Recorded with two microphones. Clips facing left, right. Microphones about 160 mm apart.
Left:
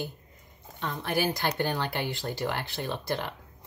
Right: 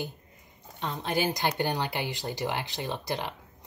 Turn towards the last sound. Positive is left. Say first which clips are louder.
# left 1 dB
turn(degrees=-15)  # may be behind; listen again after turning